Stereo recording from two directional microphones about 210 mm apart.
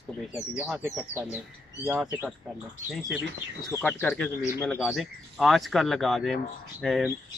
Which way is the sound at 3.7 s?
10° left (ahead or behind).